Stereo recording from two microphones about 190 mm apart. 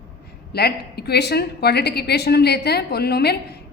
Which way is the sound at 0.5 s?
55° left (ahead or behind).